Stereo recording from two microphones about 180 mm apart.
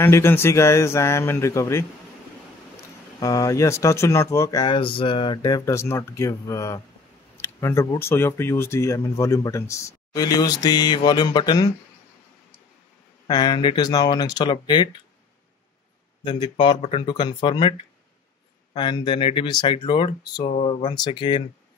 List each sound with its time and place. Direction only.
0.0 s speech: 15° left (ahead or behind)
3.2 s speech: 20° left (ahead or behind)
13.3 s speech: 25° left (ahead or behind)
16.3 s speech: 25° left (ahead or behind)